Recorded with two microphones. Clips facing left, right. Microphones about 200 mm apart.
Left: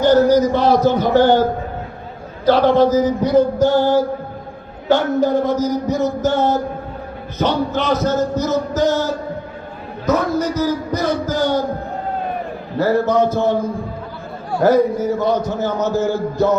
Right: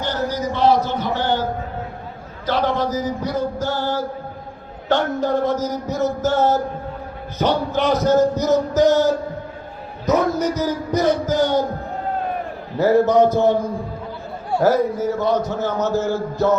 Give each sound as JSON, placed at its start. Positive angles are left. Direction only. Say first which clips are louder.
{"t": 0.0, "sound": "a man's voice", "louder": "left 11 dB", "side_deg": 40}
{"t": 2.5, "sound": "a sound", "louder": "left 8 dB", "side_deg": 30}
{"t": 4.9, "sound": "a man's voice", "louder": "left 4 dB", "side_deg": 0}
{"t": 7.3, "sound": "music", "louder": "left 1 dB", "side_deg": -15}
{"t": 10.1, "sound": "a man's voice", "louder": "left 1 dB", "side_deg": -20}
{"t": 12.8, "sound": "music", "louder": "right 1 dB", "side_deg": -20}
{"t": 14.6, "sound": "a man's voice", "louder": "left 4 dB", "side_deg": -5}